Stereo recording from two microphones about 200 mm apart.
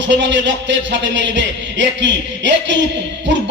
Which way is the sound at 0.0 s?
65° right (ahead or behind).